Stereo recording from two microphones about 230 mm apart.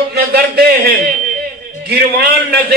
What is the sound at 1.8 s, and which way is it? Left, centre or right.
Speech, right.